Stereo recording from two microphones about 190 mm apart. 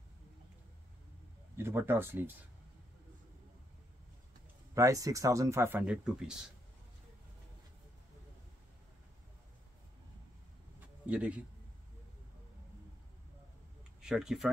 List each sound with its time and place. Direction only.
1.6 s speech: 10° right (ahead or behind)
4.7 s speech: 15° right (ahead or behind)
11.1 s speech: 5° right (ahead or behind)
14.0 s speech: 5° right (ahead or behind)